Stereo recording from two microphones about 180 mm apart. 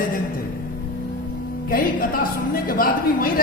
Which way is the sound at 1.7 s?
50° left (ahead or behind).